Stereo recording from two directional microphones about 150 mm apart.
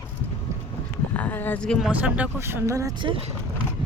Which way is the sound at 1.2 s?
10° left (ahead or behind).